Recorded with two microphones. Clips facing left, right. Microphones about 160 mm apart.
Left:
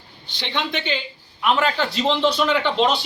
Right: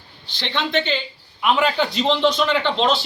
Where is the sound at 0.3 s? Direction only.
10° left (ahead or behind).